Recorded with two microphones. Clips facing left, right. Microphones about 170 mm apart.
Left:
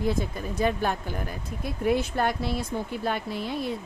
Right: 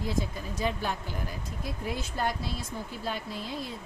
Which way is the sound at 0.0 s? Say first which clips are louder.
Left 5 dB; 55° left (ahead or behind).